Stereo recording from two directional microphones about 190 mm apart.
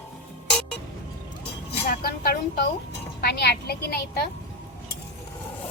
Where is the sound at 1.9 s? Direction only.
55° left (ahead or behind).